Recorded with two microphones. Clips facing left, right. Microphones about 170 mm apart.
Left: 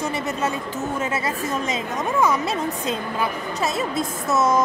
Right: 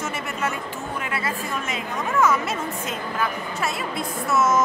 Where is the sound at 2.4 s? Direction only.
35° left (ahead or behind).